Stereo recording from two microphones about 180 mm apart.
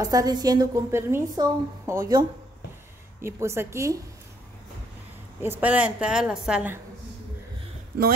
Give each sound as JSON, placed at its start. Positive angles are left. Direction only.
{"t": 0.0, "sound": "a woman's voice", "side_deg": -20}
{"t": 5.4, "sound": "a woman's voice", "side_deg": -10}